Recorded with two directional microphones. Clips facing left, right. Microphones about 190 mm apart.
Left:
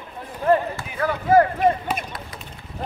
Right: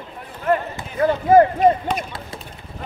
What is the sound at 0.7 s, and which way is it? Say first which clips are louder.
Speech: right 5 dB; 25° right (ahead or behind).